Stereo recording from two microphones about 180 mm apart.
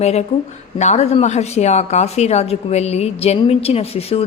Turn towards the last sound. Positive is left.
turn(degrees=35)  # may be behind; listen again after turning